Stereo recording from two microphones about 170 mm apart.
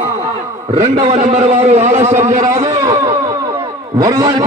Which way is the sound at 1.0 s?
40° right (ahead or behind).